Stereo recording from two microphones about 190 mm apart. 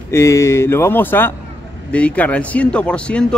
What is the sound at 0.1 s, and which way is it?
Speech, 15° left (ahead or behind).